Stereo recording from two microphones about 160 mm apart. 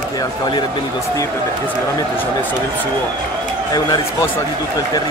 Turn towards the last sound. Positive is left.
turn(degrees=25)  # may be behind; listen again after turning